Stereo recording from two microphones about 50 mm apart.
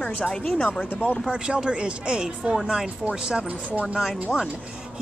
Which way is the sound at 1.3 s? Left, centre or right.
Centre.